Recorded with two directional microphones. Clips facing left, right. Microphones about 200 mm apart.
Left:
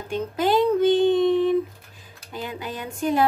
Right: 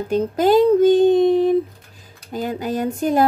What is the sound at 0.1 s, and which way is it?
Speech, 40° right (ahead or behind).